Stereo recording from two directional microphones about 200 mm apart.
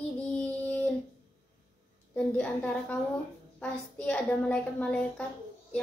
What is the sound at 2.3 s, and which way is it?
A woman's voice, 5° left (ahead or behind).